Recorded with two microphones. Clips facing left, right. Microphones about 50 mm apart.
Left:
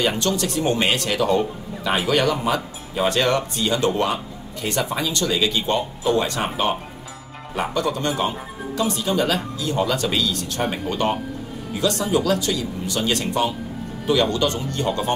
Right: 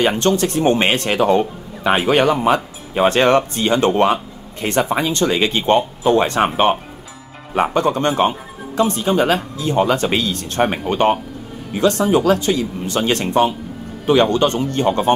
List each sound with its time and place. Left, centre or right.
0.1 s speech: right